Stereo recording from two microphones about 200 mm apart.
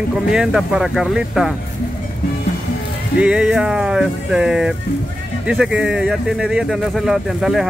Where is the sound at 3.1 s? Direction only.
5° right (ahead or behind).